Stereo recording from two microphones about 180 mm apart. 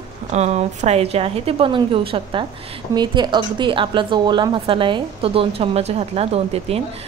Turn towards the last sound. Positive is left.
turn(degrees=-35)  # may be behind; listen again after turning